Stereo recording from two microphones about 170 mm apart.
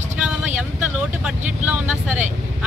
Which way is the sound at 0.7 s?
10° right (ahead or behind).